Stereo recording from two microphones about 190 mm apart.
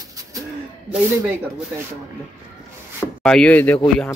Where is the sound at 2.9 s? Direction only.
5° left (ahead or behind).